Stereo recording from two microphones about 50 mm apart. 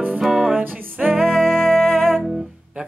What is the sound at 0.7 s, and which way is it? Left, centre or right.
Music, right.